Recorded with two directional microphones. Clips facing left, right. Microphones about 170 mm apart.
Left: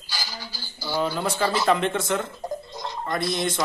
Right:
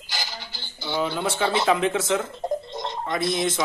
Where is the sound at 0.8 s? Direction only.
Centre (ahead or behind).